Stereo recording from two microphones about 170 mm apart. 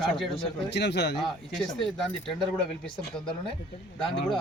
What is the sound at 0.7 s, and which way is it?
Speech, 90° left.